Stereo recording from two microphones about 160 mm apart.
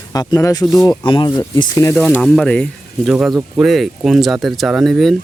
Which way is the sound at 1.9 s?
5° left (ahead or behind).